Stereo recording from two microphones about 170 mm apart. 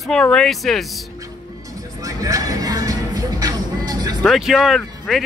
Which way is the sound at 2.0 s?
20° right (ahead or behind).